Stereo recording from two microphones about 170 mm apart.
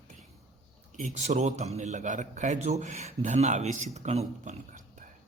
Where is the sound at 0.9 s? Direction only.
45° right (ahead or behind).